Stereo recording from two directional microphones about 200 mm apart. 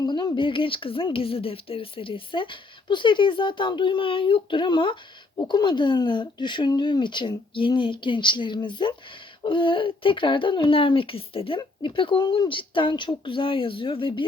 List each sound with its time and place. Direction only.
0.0 s speech: 20° left (ahead or behind)